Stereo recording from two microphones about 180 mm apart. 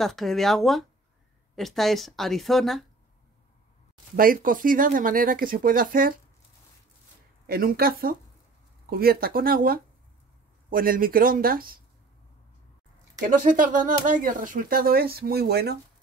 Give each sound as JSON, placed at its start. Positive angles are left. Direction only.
{"t": 0.0, "sound": "speech", "side_deg": 0}
{"t": 4.2, "sound": "speech", "side_deg": -50}
{"t": 7.4, "sound": "speech", "side_deg": -55}
{"t": 13.3, "sound": "speech", "side_deg": -50}